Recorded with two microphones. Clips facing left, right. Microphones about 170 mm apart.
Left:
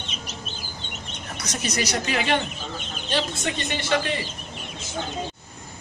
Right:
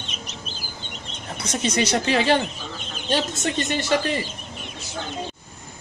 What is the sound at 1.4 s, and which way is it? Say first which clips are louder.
Speech: right 5 dB; 30° right (ahead or behind).